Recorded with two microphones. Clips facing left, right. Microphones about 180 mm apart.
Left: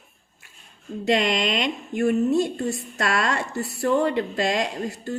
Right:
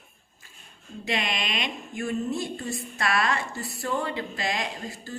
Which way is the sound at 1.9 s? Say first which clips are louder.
Left 9 dB; 70° left (ahead or behind).